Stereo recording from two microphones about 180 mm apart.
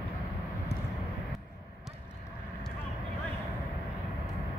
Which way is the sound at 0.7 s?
65° left (ahead or behind).